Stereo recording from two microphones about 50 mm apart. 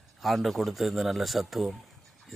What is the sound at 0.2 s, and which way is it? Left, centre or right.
Speech, centre.